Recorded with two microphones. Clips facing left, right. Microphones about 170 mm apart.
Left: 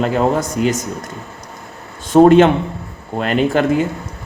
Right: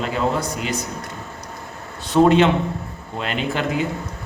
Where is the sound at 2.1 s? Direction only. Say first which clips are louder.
Left 6 dB; 50° left (ahead or behind).